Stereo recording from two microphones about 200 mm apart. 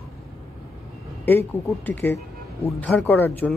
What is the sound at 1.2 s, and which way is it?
Speech, 10° left (ahead or behind).